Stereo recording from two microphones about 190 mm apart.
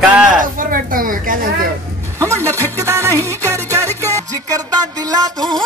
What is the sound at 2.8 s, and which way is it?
Music, 15° right (ahead or behind).